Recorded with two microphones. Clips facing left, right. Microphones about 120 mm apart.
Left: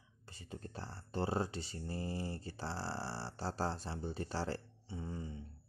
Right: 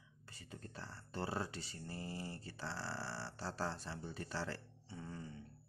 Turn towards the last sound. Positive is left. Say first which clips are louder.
# left 5 dB
turn(degrees=20)  # may be behind; listen again after turning